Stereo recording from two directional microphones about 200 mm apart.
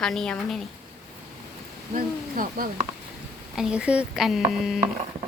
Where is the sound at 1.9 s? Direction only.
45° right (ahead or behind).